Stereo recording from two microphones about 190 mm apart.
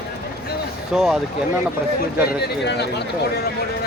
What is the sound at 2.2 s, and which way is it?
Speech, 60° left (ahead or behind).